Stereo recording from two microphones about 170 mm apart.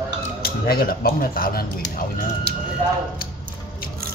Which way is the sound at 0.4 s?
65° left (ahead or behind).